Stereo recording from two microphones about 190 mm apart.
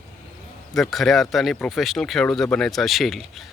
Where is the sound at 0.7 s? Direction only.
Centre (ahead or behind).